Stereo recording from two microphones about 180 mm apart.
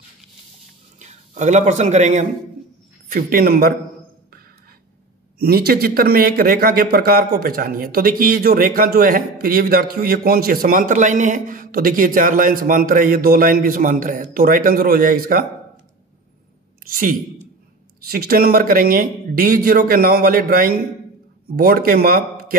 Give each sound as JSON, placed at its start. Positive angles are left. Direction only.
{"t": 0.9, "sound": "speech", "side_deg": -40}
{"t": 3.1, "sound": "speech", "side_deg": -50}
{"t": 5.4, "sound": "speech", "side_deg": -55}
{"t": 16.8, "sound": "a woman's voice", "side_deg": -50}